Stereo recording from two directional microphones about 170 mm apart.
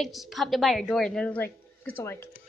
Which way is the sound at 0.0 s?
Centre (ahead or behind).